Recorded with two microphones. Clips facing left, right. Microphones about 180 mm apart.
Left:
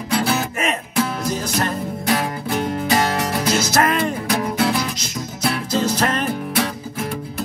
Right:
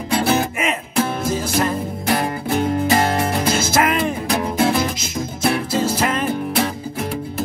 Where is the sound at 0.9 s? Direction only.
25° right (ahead or behind).